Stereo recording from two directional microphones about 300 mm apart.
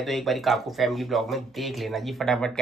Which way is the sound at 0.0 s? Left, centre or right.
Centre.